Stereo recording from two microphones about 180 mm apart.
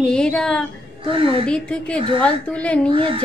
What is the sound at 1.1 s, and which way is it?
Speech, 30° right (ahead or behind).